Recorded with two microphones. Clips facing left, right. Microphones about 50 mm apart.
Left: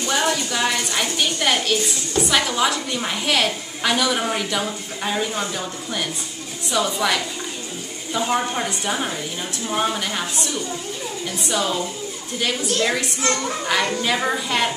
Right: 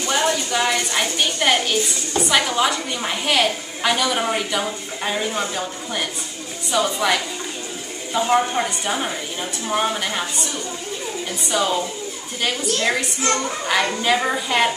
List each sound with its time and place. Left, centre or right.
0.2 s a woman's voice: centre